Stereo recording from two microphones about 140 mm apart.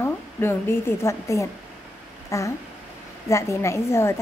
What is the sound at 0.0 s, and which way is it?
A woman's voice, 15° left (ahead or behind).